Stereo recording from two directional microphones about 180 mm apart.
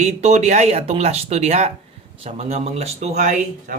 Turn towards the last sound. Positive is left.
turn(degrees=-40)  # may be behind; listen again after turning